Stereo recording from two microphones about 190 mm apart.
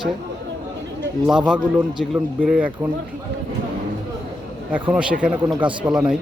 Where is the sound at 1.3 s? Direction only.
5° right (ahead or behind).